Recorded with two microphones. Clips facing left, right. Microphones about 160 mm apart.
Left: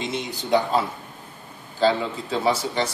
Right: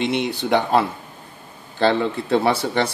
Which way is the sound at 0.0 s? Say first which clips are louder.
Right 7 dB; 65° right (ahead or behind).